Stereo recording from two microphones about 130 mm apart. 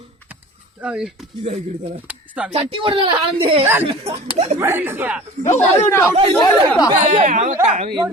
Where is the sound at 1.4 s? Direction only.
55° right (ahead or behind).